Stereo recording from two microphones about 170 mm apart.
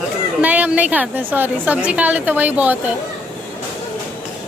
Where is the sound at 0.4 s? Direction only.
10° right (ahead or behind).